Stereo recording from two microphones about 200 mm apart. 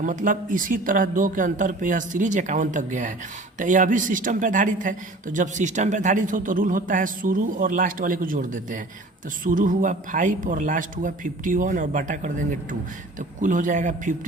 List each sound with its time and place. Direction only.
0.0 s speech: 40° right (ahead or behind)